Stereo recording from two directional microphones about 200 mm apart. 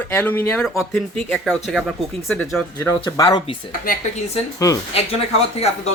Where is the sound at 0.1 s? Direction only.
10° left (ahead or behind).